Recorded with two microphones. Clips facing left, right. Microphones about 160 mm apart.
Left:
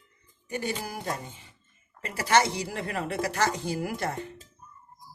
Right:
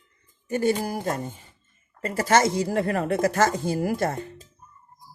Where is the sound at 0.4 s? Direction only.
45° right (ahead or behind).